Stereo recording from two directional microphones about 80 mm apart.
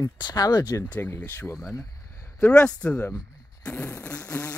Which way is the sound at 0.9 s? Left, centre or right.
Left.